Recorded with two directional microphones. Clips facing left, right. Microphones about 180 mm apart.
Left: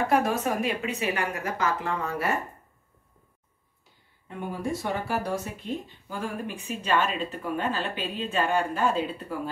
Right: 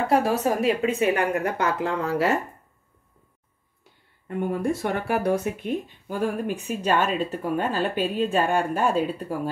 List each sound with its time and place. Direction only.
0.1 s speech: 35° right (ahead or behind)
1.1 s speech: 60° right (ahead or behind); by 2.3 s 90° right
4.3 s speech: 60° right (ahead or behind)